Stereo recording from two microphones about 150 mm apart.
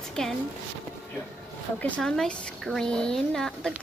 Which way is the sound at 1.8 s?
5° left (ahead or behind).